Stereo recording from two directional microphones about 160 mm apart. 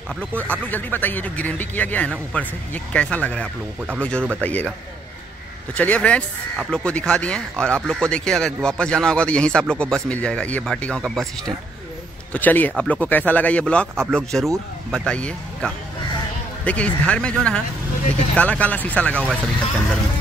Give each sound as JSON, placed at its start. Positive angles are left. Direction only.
{"t": 0.2, "sound": "speech", "side_deg": 10}
{"t": 5.8, "sound": "a man's voice", "side_deg": 10}